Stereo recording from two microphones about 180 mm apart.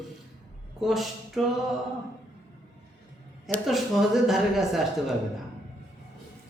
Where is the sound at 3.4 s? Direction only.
Centre (ahead or behind).